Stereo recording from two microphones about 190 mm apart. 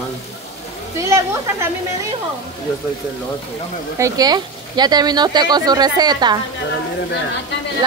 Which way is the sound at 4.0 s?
20° right (ahead or behind).